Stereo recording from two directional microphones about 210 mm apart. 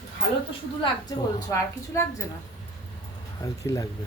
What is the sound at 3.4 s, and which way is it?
Speech, 15° left (ahead or behind).